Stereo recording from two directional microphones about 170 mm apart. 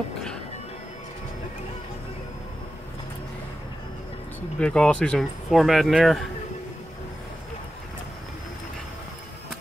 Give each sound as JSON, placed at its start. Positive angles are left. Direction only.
{"t": 4.6, "sound": "speech", "side_deg": 5}